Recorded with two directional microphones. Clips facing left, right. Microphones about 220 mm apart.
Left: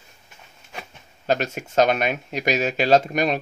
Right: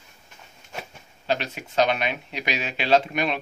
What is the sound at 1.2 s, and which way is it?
Speech, 45° left (ahead or behind).